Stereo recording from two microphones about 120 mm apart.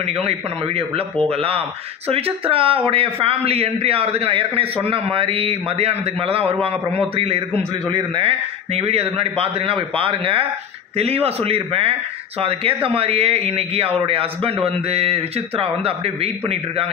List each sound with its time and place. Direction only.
0.0 s a man's voice: 55° right (ahead or behind)